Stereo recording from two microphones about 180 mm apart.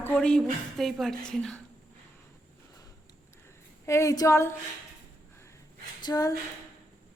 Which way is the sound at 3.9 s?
15° left (ahead or behind).